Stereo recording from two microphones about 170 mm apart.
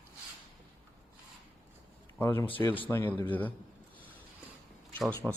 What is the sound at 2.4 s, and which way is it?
Speech, 30° left (ahead or behind).